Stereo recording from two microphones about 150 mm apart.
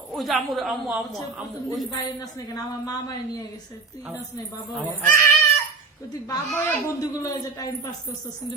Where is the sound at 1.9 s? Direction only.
25° left (ahead or behind).